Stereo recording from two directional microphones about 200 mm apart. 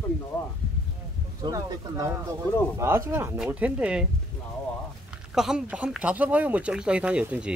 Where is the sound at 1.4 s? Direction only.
20° right (ahead or behind).